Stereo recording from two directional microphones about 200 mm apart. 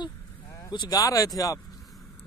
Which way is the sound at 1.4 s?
15° left (ahead or behind).